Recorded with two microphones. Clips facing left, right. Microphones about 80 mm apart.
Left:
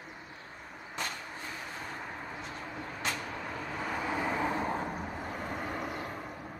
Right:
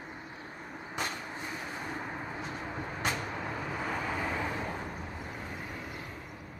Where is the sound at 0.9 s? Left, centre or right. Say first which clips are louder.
Right 2 dB; centre.